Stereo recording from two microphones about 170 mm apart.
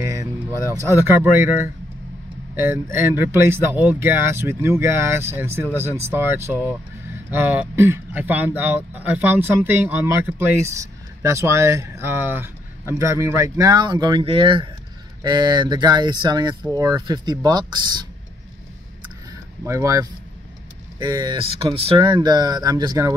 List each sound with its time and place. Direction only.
0.1 s speech: 15° right (ahead or behind)
19.6 s speech: 20° right (ahead or behind)